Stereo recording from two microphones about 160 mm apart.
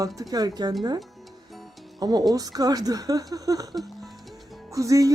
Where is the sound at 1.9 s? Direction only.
25° right (ahead or behind).